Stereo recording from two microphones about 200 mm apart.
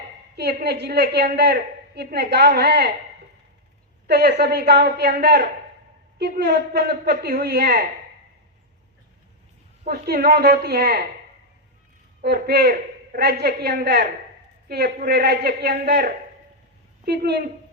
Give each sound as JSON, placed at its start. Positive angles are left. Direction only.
{"t": 0.3, "sound": "a woman's voice", "side_deg": -55}
{"t": 4.0, "sound": "a woman's voice", "side_deg": -55}
{"t": 6.1, "sound": "a woman's voice", "side_deg": -55}
{"t": 9.8, "sound": "a man's voice", "side_deg": -50}
{"t": 12.2, "sound": "a man's voice", "side_deg": -55}